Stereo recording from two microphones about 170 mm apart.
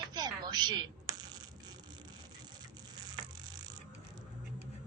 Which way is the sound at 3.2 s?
25° right (ahead or behind).